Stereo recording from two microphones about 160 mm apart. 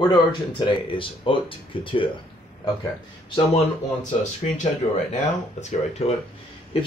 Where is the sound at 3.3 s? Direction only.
45° left (ahead or behind).